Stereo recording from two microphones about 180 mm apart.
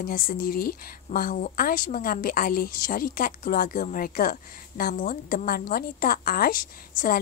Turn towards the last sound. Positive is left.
turn(degrees=50)  # may be behind; listen again after turning